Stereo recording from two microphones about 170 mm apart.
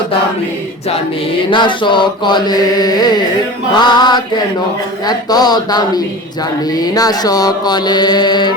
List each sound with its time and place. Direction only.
1.5 s mantra: 30° left (ahead or behind)